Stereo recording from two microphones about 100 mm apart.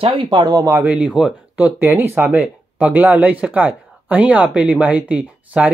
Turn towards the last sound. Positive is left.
turn(degrees=-10)  # may be behind; listen again after turning